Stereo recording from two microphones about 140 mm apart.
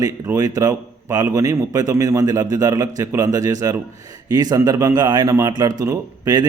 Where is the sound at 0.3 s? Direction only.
25° right (ahead or behind).